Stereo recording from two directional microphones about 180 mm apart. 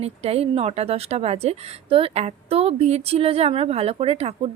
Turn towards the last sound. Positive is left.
turn(degrees=-35)  # may be behind; listen again after turning